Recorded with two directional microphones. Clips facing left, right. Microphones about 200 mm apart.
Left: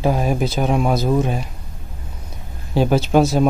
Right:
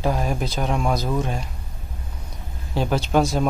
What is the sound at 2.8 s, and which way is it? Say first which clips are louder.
Speech: left 5 dB; 5° left (ahead or behind).